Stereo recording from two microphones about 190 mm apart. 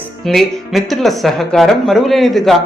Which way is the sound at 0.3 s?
Centre (ahead or behind).